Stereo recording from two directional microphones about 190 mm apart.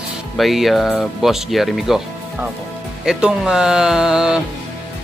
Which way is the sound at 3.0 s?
5° right (ahead or behind).